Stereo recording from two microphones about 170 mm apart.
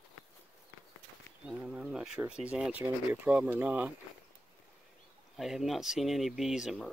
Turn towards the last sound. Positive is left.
turn(degrees=-5)  # may be behind; listen again after turning